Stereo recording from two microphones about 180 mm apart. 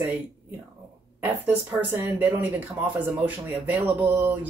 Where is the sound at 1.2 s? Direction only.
10° right (ahead or behind).